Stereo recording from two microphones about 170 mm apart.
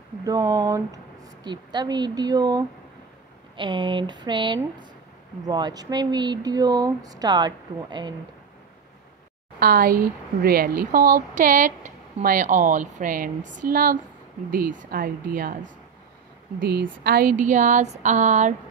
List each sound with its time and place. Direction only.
0.2 s speech: 20° right (ahead or behind)
9.6 s speech: 60° right (ahead or behind)
16.5 s speech: 75° right (ahead or behind); by 18.5 s 45° right (ahead or behind)